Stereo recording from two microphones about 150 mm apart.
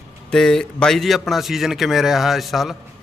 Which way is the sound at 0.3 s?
5° left (ahead or behind).